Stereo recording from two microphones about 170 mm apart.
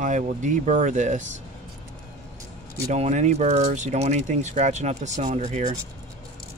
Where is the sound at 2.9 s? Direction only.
45° right (ahead or behind).